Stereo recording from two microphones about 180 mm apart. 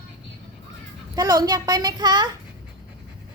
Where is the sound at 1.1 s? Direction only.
20° right (ahead or behind).